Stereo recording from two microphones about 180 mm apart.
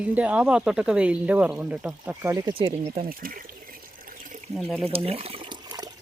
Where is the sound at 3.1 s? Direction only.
50° right (ahead or behind).